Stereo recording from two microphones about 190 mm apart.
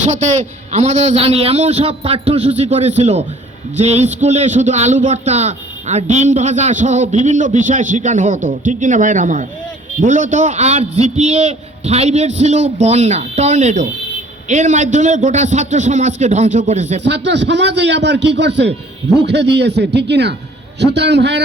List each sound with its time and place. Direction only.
0.7 s a man's voice: 35° right (ahead or behind)
17.0 s a man's voice: 70° right (ahead or behind)